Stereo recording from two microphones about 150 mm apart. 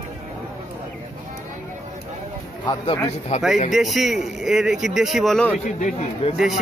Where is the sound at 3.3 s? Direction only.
50° left (ahead or behind).